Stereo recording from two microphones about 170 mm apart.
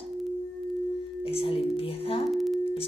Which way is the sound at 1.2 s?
35° left (ahead or behind).